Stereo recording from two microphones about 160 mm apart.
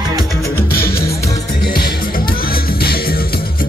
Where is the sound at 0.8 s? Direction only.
70° left (ahead or behind).